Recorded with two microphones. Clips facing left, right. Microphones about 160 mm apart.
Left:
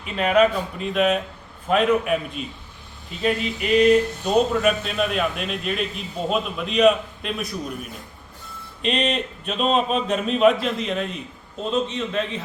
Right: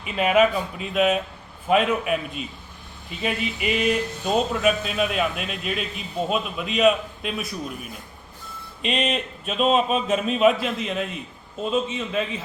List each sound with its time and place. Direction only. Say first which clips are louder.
0.0 s speech: left 1 dB; 5° right (ahead or behind)